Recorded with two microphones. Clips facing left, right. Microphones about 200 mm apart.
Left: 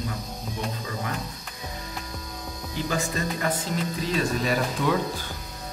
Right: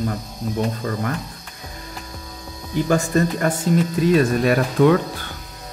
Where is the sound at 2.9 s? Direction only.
50° right (ahead or behind).